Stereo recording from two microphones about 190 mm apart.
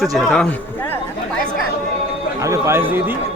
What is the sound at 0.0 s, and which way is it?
Speech, centre (ahead or behind).